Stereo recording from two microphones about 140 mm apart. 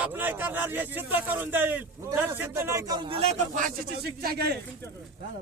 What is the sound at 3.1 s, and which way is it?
Speech, 50° right (ahead or behind).